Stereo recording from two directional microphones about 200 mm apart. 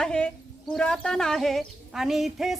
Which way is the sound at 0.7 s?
5° left (ahead or behind).